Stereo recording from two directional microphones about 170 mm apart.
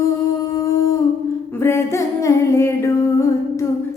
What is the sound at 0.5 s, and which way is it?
Humming, 20° left (ahead or behind).